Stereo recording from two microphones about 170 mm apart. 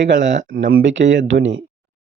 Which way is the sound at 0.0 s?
90° right.